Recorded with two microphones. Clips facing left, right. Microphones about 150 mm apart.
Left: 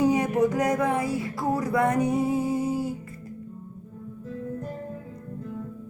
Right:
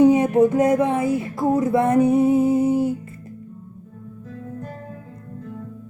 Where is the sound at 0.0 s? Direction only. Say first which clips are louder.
Right 7 dB; 25° right (ahead or behind).